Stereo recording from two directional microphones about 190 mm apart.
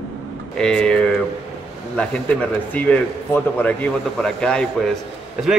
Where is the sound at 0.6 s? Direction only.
5° left (ahead or behind).